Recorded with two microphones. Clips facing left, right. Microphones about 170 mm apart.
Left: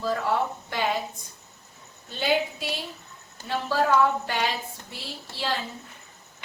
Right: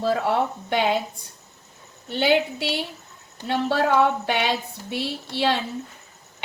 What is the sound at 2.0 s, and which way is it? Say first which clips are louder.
A woman's voice: right 5 dB; 75° right (ahead or behind).